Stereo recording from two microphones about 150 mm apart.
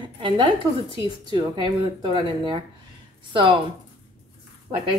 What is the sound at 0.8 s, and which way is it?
Speech, 35° left (ahead or behind).